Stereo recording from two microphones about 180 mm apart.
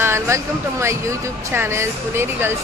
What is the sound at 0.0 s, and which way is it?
Speech, 15° right (ahead or behind).